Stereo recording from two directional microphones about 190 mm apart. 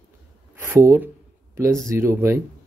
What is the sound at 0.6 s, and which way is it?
Speech, 10° right (ahead or behind).